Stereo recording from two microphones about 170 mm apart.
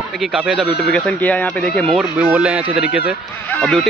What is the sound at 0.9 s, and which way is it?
Speech, 10° left (ahead or behind).